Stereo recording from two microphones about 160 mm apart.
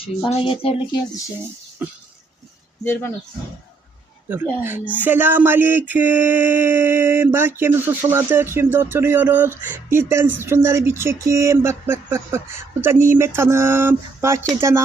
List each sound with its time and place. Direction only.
0.0 s speech: 35° left (ahead or behind)
1.8 s speech: 10° right (ahead or behind)
2.8 s speech: 15° left (ahead or behind)
4.3 s speech: 10° right (ahead or behind)